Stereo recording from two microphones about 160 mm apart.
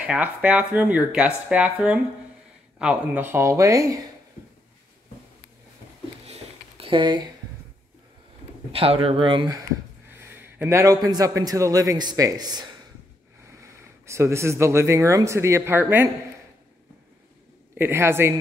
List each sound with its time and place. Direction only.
0.0 s speech: 10° right (ahead or behind)
6.2 s a sound: 40° right (ahead or behind)
8.7 s speech: 35° right (ahead or behind)
10.1 s a man's voice: 15° right (ahead or behind)
17.7 s speech: 15° right (ahead or behind)